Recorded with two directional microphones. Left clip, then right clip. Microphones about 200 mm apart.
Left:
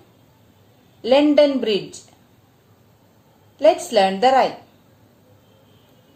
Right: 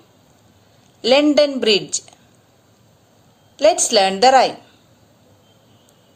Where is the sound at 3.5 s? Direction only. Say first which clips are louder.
Right 1 dB; 35° right (ahead or behind).